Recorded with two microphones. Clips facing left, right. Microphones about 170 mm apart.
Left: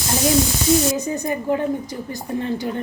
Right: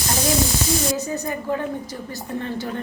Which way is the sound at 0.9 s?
20° left (ahead or behind).